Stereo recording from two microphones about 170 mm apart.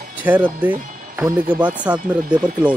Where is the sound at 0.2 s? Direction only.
10° right (ahead or behind).